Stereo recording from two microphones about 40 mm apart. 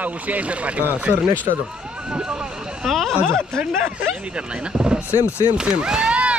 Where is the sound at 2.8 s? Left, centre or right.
Centre.